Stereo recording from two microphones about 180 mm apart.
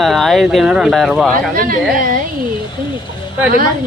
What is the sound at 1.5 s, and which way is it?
Speech, 50° right (ahead or behind).